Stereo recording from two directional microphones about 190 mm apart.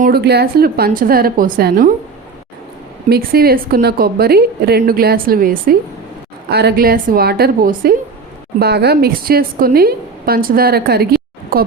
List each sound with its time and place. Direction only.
0.0 s a woman's voice: 55° right (ahead or behind)
3.1 s a woman's voice: 55° right (ahead or behind)